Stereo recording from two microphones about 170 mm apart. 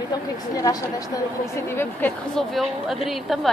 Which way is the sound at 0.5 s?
20° left (ahead or behind).